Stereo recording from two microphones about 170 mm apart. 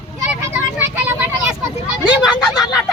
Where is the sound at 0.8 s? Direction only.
10° right (ahead or behind).